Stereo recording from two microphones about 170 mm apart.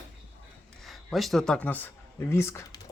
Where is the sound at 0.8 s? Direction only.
Centre (ahead or behind).